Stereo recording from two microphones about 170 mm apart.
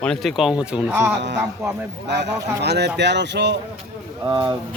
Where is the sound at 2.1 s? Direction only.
80° right.